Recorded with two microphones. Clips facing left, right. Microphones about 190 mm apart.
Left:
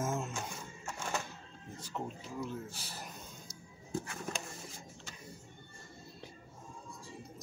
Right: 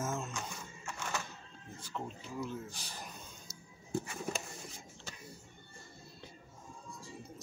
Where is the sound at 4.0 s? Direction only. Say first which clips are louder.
Right 2 dB; 10° right (ahead or behind).